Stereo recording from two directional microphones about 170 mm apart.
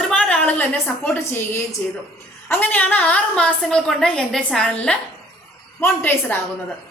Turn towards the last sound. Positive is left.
turn(degrees=10)  # may be behind; listen again after turning